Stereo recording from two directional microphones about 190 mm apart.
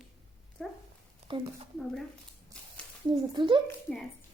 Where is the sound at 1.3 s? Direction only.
25° right (ahead or behind).